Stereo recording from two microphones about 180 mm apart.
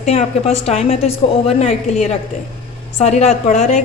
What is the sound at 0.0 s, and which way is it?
A woman's voice, 35° left (ahead or behind).